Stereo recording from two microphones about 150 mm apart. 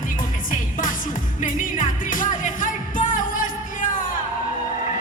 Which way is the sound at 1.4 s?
60° left (ahead or behind).